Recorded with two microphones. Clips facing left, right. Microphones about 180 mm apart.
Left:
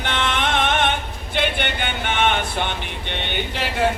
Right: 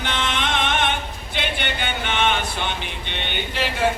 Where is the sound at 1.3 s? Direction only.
55° left (ahead or behind).